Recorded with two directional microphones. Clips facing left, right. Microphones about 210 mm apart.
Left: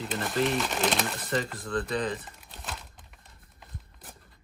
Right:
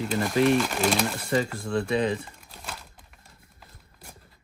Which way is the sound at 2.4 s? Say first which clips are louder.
Even; centre (ahead or behind).